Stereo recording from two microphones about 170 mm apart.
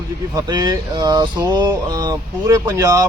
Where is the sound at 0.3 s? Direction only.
25° right (ahead or behind).